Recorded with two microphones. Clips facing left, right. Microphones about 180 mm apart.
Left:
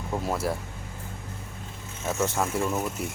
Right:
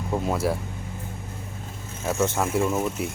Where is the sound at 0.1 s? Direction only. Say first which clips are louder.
Right 3 dB; centre (ahead or behind).